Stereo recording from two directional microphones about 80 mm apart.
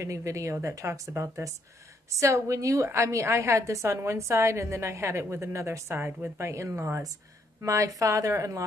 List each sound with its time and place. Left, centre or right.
0.0 s a woman's voice: right